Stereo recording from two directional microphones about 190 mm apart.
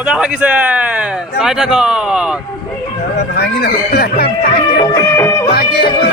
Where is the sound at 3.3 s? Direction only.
60° left (ahead or behind).